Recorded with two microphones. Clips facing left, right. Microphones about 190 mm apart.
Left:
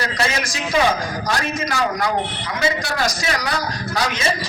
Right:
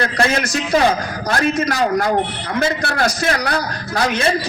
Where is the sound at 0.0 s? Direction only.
55° right (ahead or behind).